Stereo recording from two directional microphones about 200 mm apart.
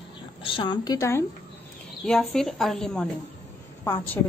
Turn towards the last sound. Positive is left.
turn(degrees=10)  # may be behind; listen again after turning